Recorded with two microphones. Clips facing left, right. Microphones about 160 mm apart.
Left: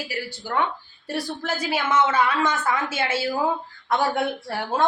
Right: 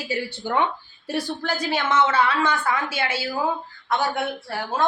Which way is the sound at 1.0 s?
Centre (ahead or behind).